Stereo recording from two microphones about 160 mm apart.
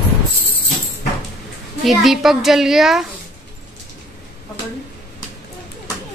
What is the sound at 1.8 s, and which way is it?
A woman's voice, centre (ahead or behind).